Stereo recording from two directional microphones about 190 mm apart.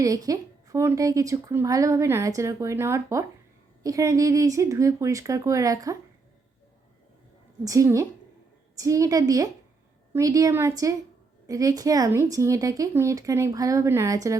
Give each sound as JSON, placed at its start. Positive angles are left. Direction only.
{"t": 0.0, "sound": "speech", "side_deg": -20}
{"t": 7.6, "sound": "speech", "side_deg": -15}